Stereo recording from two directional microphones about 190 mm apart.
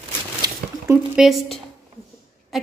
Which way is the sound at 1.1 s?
Centre (ahead or behind).